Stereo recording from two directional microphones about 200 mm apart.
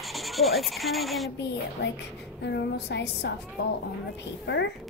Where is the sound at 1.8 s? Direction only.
55° left (ahead or behind).